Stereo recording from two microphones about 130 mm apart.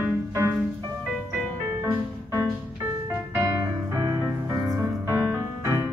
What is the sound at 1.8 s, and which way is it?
Music, 20° right (ahead or behind).